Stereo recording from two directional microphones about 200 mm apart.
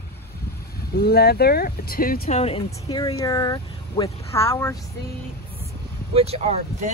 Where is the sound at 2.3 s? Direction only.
30° left (ahead or behind).